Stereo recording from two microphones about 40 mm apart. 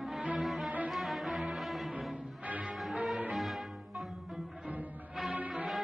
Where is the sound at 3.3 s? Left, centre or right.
Centre.